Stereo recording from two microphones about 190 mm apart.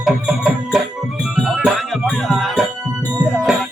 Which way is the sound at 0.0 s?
5° right (ahead or behind).